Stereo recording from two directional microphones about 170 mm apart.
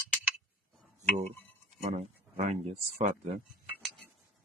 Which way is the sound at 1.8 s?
40° right (ahead or behind).